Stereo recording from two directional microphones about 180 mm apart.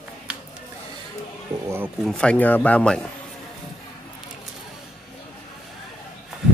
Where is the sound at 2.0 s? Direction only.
5° left (ahead or behind).